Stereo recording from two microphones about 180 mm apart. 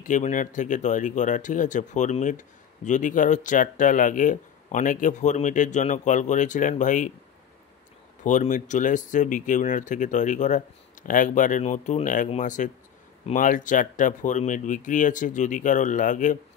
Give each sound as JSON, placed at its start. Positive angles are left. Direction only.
{"t": 0.0, "sound": "speech", "side_deg": 45}
{"t": 8.2, "sound": "speech", "side_deg": 45}